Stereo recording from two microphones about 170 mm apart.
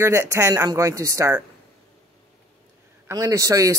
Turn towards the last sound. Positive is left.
turn(degrees=-20)  # may be behind; listen again after turning